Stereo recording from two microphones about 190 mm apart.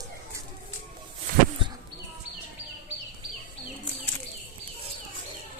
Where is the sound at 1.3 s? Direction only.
45° right (ahead or behind).